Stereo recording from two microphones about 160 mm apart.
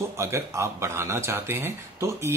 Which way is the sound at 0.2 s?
20° right (ahead or behind).